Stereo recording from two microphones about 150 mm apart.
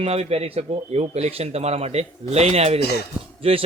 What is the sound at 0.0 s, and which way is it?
A man's voice, 40° right (ahead or behind).